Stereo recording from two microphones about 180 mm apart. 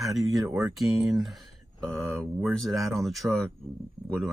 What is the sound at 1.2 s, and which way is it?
Speech, centre (ahead or behind).